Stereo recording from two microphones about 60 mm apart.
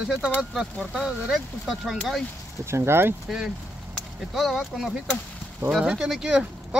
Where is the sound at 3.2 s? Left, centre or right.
Centre.